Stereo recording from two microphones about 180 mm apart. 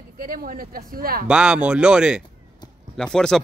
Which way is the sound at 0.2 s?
50° right (ahead or behind).